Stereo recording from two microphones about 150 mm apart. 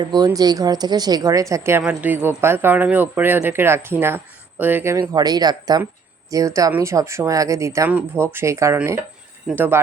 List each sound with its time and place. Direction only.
0.0 s a woman's voice: 25° right (ahead or behind)